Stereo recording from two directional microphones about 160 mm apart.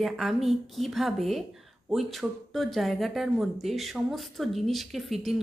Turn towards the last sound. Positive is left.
turn(degrees=0)  # may be behind; listen again after turning